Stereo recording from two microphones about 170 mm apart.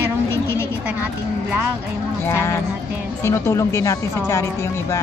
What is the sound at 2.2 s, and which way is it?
A woman's voice, 15° left (ahead or behind).